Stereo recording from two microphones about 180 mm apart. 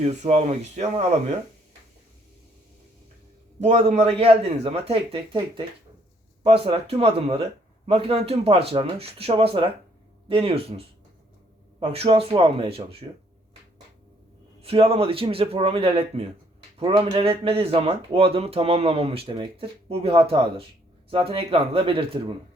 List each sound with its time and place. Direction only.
0.0 s speech: 40° right (ahead or behind)
3.6 s speech: 40° right (ahead or behind)
14.6 s speech: 30° right (ahead or behind)